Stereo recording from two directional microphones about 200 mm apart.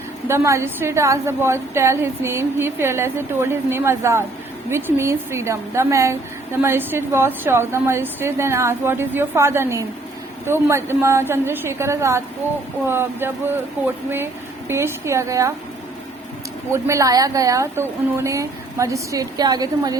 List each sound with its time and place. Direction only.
0.3 s a woman's voice: 15° right (ahead or behind)
14.7 s a woman's voice: 15° right (ahead or behind)
16.7 s a woman's voice: 15° right (ahead or behind)